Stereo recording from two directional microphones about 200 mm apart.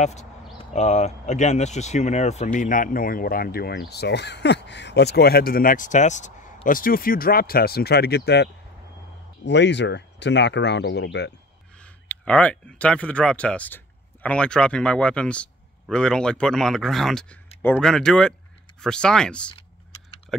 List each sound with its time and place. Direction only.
0.0 s speech: 35° left (ahead or behind); by 11.3 s 60° left (ahead or behind)
11.8 s speech: 5° left (ahead or behind)